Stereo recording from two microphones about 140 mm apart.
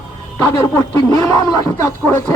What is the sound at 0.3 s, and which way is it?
A man's voice, 15° left (ahead or behind).